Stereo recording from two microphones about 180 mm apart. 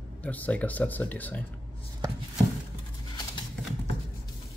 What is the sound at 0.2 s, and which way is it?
Speech, 10° left (ahead or behind).